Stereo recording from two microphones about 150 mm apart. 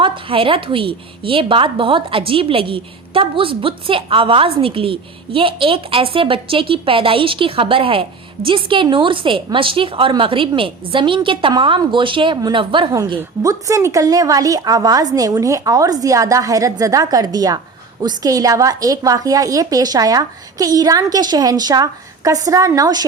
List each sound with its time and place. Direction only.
0.0 s a woman's voice: 35° right (ahead or behind)
12.9 s a woman's voice: 25° right (ahead or behind)